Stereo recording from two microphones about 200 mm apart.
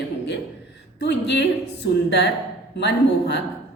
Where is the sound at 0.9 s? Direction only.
60° left (ahead or behind).